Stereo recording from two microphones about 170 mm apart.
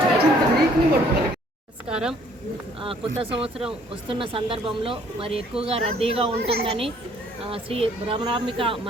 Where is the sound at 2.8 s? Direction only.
35° right (ahead or behind).